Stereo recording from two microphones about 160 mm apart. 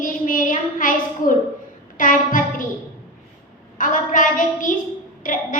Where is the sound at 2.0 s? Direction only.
55° left (ahead or behind).